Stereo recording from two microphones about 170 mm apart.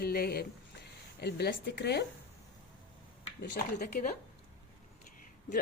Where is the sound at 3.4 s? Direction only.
55° left (ahead or behind).